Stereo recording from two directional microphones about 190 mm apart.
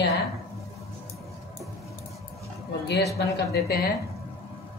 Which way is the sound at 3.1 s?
60° left (ahead or behind).